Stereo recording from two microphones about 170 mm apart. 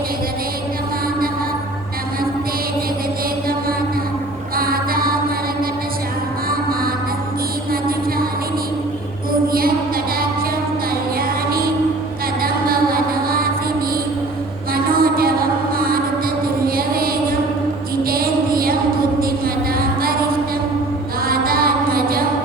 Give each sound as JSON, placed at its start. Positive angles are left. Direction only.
{"t": 4.5, "sound": "music", "side_deg": -60}
{"t": 7.7, "sound": "music", "side_deg": -60}
{"t": 9.5, "sound": "music", "side_deg": -60}
{"t": 11.2, "sound": "music", "side_deg": -60}
{"t": 14.7, "sound": "music", "side_deg": -60}
{"t": 19.8, "sound": "music", "side_deg": -60}
{"t": 21.2, "sound": "music", "side_deg": -60}